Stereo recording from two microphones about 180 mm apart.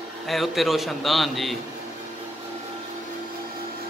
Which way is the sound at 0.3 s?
Centre (ahead or behind).